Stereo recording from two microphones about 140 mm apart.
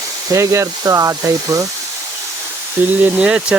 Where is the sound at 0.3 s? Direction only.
20° right (ahead or behind).